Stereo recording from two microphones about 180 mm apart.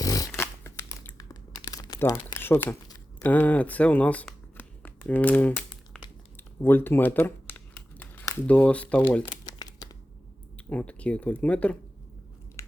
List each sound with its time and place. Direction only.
0.0 s a sound: 20° left (ahead or behind)
3.2 s speech: 10° left (ahead or behind)
6.3 s crumpling: 10° left (ahead or behind)
8.4 s speech: 10° left (ahead or behind)
9.2 s crumpling: 20° left (ahead or behind)
10.7 s speech: 10° left (ahead or behind)